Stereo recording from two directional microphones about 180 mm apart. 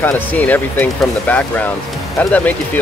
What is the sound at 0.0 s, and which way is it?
Speech, 10° left (ahead or behind).